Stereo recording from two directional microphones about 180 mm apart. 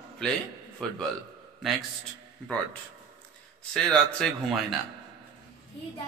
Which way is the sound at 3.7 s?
Centre (ahead or behind).